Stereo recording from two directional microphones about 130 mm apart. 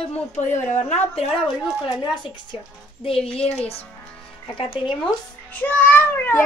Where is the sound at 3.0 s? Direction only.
45° left (ahead or behind).